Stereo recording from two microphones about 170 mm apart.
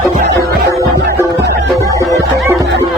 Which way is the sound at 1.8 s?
20° left (ahead or behind).